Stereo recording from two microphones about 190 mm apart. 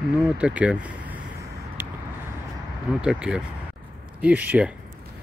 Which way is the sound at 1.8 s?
10° right (ahead or behind).